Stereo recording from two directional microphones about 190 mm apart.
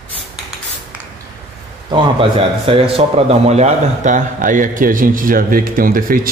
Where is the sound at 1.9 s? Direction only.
30° right (ahead or behind).